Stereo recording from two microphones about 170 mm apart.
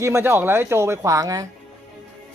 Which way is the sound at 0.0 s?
15° right (ahead or behind).